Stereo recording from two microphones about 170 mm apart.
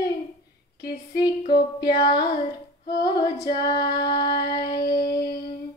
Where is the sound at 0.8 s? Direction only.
20° left (ahead or behind).